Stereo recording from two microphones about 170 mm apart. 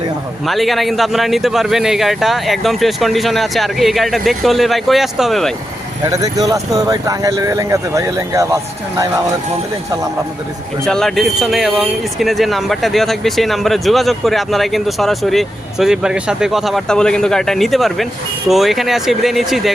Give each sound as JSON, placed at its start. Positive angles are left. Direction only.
{"t": 0.4, "sound": "speech", "side_deg": 0}
{"t": 6.1, "sound": "speech", "side_deg": -20}
{"t": 10.8, "sound": "speech", "side_deg": 5}